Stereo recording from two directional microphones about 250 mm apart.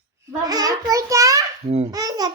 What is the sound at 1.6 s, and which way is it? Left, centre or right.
Speech, right.